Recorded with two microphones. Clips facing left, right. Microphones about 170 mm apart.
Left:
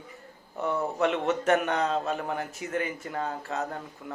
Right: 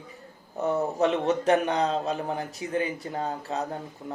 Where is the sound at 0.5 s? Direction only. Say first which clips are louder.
Right 3 dB; 40° right (ahead or behind).